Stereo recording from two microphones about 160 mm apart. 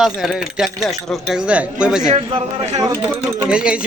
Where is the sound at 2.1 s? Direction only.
40° right (ahead or behind).